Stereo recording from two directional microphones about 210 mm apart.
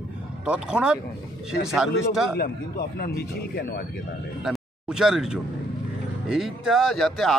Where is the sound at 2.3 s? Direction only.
45° left (ahead or behind).